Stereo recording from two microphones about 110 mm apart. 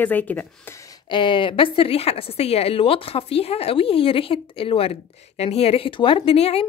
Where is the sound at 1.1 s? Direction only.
50° left (ahead or behind).